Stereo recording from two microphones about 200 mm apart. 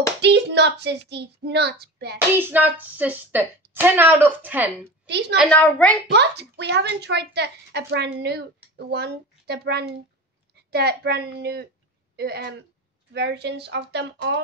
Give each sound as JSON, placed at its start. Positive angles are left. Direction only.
{"t": 0.2, "sound": "speech", "side_deg": -60}
{"t": 2.1, "sound": "speech", "side_deg": -10}
{"t": 5.5, "sound": "a woman's voice", "side_deg": 5}
{"t": 6.0, "sound": "a child's voice", "side_deg": -55}